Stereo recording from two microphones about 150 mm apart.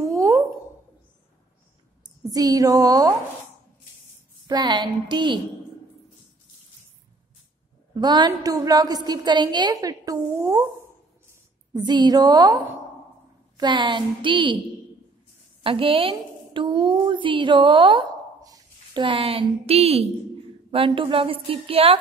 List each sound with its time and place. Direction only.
0.0 s a sound: 20° right (ahead or behind)
2.2 s a woman's voice: 25° right (ahead or behind)
4.5 s a woman's voice: 30° right (ahead or behind)
7.9 s a woman's voice: 30° right (ahead or behind)
11.7 s a woman's voice: 30° right (ahead or behind)
15.6 s a woman's voice: 35° right (ahead or behind)
19.0 s a woman's voice: 40° right (ahead or behind)